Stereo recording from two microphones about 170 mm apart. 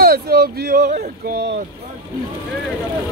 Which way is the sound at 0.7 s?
50° right (ahead or behind).